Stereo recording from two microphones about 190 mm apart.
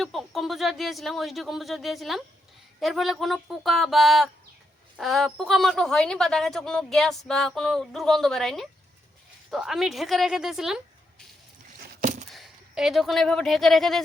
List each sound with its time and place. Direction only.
0.0 s a woman's voice: centre (ahead or behind)
11.9 s a sound: 40° right (ahead or behind)
12.3 s speech: centre (ahead or behind)